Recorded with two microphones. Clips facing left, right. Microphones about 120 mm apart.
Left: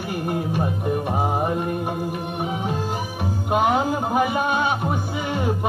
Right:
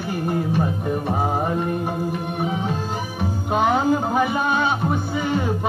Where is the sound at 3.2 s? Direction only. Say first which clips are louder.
Even; 10° left (ahead or behind).